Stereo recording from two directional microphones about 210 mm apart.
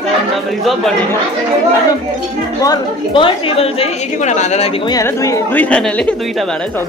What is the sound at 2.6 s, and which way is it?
A woman's voice, 20° left (ahead or behind).